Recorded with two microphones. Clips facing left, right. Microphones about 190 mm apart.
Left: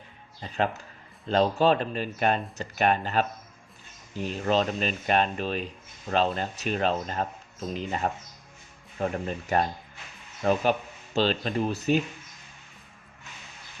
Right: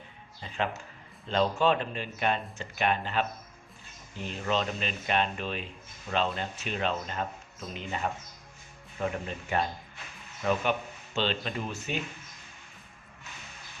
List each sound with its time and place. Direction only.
0.4 s speech: 40° left (ahead or behind)